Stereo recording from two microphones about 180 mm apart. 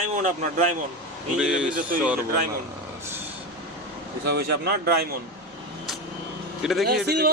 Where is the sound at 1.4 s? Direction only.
5° right (ahead or behind).